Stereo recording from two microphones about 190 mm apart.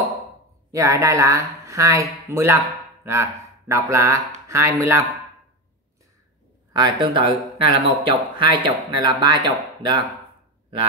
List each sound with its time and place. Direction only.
0.7 s speech: 15° right (ahead or behind)
6.8 s speech: 25° right (ahead or behind)